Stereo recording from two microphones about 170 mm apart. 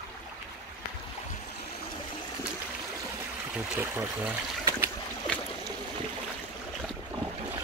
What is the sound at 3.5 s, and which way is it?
Trickle, 10° right (ahead or behind).